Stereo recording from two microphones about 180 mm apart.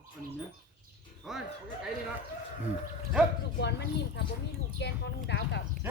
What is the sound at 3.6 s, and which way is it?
Speech, 70° left (ahead or behind).